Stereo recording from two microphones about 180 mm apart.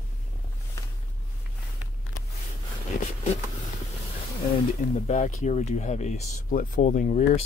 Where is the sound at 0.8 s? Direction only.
15° left (ahead or behind).